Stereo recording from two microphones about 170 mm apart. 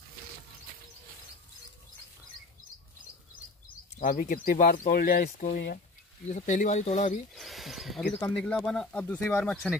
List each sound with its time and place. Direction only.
4.0 s speech: 55° left (ahead or behind)
6.2 s speech: 45° left (ahead or behind)
7.3 s speech: centre (ahead or behind)
8.1 s speech: 10° left (ahead or behind)